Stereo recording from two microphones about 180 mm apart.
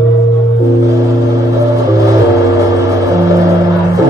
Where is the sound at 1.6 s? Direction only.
15° right (ahead or behind).